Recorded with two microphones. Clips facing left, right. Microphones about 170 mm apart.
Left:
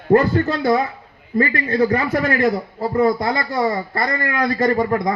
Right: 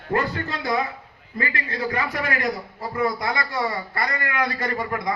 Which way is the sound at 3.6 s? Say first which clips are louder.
Left 6 dB; 40° left (ahead or behind).